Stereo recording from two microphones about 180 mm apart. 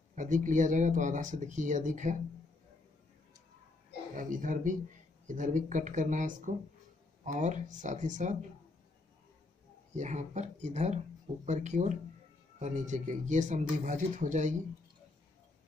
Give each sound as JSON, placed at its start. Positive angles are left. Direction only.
{"t": 0.1, "sound": "speech", "side_deg": -45}
{"t": 4.1, "sound": "speech", "side_deg": -45}
{"t": 9.9, "sound": "speech", "side_deg": -40}